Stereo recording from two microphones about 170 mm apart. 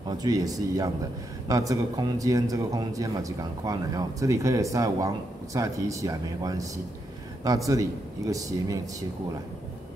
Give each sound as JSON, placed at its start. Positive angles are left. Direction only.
{"t": 0.0, "sound": "a man's voice", "side_deg": -20}